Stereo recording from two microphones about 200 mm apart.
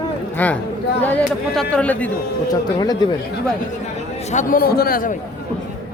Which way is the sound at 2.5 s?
20° left (ahead or behind).